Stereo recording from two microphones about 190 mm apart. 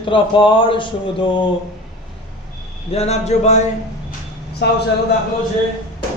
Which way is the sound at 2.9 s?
35° left (ahead or behind).